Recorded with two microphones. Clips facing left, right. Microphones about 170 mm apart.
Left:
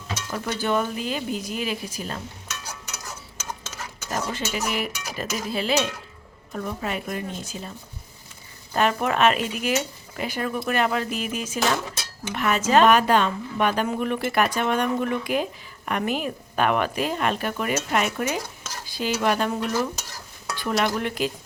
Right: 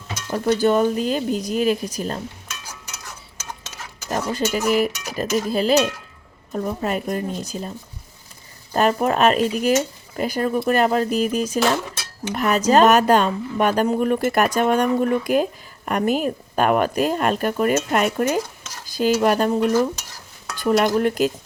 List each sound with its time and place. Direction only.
0.3 s speech: 45° right (ahead or behind)
4.1 s speech: 40° right (ahead or behind)
8.7 s speech: 35° right (ahead or behind)